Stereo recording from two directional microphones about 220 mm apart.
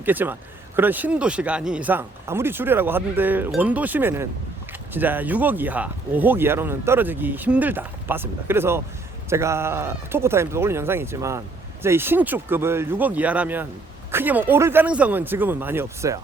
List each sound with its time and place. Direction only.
0.0 s speech: 10° right (ahead or behind)